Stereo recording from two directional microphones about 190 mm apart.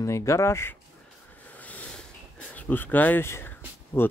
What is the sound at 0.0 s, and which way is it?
Speech, 15° left (ahead or behind).